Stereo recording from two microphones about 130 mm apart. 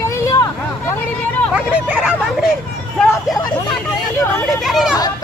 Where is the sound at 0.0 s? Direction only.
25° left (ahead or behind).